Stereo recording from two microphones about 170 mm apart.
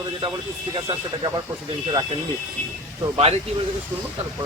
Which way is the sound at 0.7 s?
30° right (ahead or behind).